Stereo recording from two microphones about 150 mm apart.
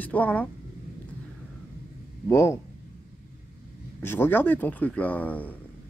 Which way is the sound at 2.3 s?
20° left (ahead or behind).